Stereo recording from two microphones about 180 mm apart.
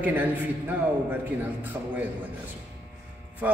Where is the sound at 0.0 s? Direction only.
10° right (ahead or behind).